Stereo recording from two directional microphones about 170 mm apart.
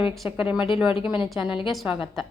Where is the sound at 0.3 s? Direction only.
30° left (ahead or behind).